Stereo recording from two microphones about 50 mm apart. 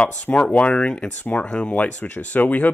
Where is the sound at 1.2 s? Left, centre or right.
Left.